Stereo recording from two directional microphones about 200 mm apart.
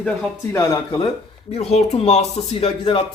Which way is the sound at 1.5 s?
30° left (ahead or behind).